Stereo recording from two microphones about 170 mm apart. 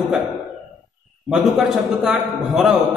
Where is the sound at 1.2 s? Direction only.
Centre (ahead or behind).